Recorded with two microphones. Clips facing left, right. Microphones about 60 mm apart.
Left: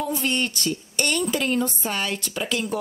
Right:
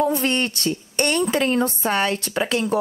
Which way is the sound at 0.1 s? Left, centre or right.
Right.